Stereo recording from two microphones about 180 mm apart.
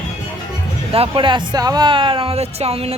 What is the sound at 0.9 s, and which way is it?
Speech, 30° right (ahead or behind).